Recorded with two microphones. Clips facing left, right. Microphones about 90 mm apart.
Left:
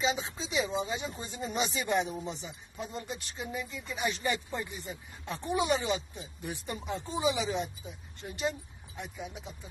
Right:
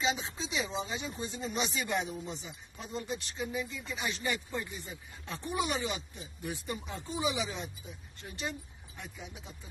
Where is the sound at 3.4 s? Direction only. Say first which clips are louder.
Right 1 dB; 5° left (ahead or behind).